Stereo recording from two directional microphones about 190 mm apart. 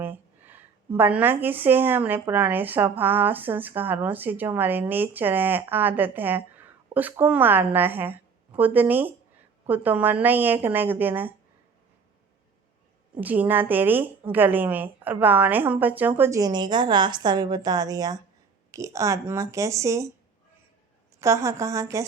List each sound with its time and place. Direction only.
0.0 s speech: 10° right (ahead or behind)
13.1 s speech: 10° right (ahead or behind)
21.2 s speech: 15° right (ahead or behind)